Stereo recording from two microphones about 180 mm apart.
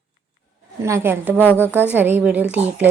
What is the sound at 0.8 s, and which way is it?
Speech, 15° right (ahead or behind).